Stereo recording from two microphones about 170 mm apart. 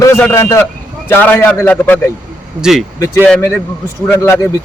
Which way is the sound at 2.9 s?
15° left (ahead or behind).